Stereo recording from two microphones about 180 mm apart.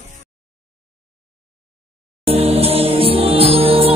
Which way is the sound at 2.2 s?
35° right (ahead or behind).